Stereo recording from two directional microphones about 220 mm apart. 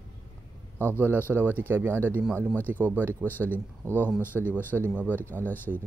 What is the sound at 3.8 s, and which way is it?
Speech, 10° left (ahead or behind).